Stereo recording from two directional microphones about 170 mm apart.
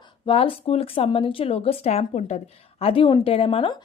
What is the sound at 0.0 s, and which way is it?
Speech, 30° left (ahead or behind).